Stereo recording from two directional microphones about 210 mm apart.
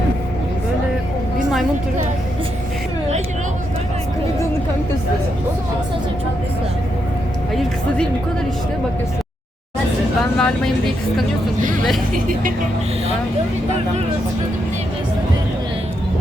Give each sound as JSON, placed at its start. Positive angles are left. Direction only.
{"t": 10.3, "sound": "speech", "side_deg": 5}
{"t": 12.1, "sound": "speech", "side_deg": -40}